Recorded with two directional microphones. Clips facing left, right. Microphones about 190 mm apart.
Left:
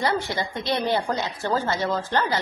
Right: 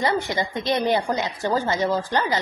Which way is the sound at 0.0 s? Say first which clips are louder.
Right 2 dB; 20° right (ahead or behind).